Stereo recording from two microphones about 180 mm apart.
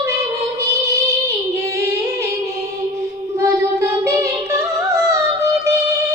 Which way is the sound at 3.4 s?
15° right (ahead or behind).